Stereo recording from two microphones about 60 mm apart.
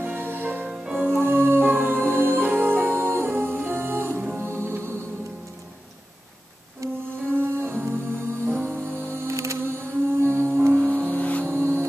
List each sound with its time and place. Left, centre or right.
0.0 s music: right
0.7 s music: centre
1.0 s music: right
7.3 s music: right
11.1 s vehicle: left
11.4 s vehicle: right